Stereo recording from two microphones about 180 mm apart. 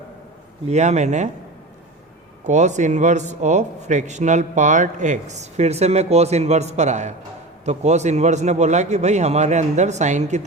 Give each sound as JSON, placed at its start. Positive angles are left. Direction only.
{"t": 0.7, "sound": "a man's voice", "side_deg": -40}
{"t": 2.4, "sound": "a man's voice", "side_deg": -40}